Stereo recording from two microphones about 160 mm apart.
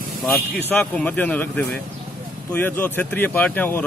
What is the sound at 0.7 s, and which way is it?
A man's voice, 10° left (ahead or behind).